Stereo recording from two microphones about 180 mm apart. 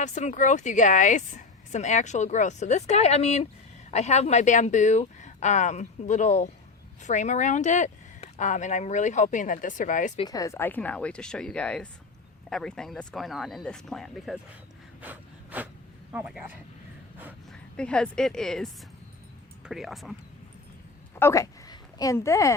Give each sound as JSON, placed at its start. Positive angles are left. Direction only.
{"t": 0.0, "sound": "speech", "side_deg": 40}
{"t": 10.2, "sound": "speech", "side_deg": 20}
{"t": 15.0, "sound": "gasp", "side_deg": -10}
{"t": 16.1, "sound": "speech", "side_deg": -5}
{"t": 17.5, "sound": "a woman's voice", "side_deg": 5}
{"t": 21.2, "sound": "speech", "side_deg": 15}